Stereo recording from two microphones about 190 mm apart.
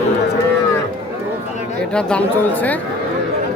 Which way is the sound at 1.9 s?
5° left (ahead or behind).